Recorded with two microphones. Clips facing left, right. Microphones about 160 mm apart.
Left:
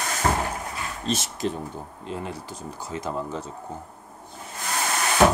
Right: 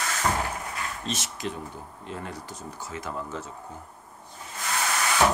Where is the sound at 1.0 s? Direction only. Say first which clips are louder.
Left 9 dB; 30° left (ahead or behind).